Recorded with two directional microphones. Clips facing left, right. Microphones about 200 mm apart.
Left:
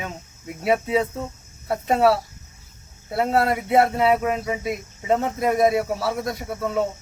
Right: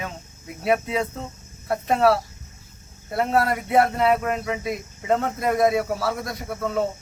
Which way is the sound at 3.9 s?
5° left (ahead or behind).